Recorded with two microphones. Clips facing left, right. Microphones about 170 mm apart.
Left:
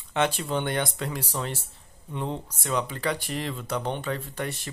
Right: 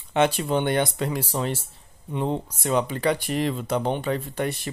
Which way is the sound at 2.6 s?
25° right (ahead or behind).